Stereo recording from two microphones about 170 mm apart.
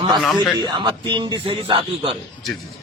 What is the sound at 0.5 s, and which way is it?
A man's voice, 25° right (ahead or behind).